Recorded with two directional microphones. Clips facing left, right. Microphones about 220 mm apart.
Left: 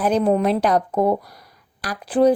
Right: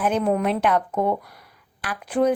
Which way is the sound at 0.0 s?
35° left (ahead or behind).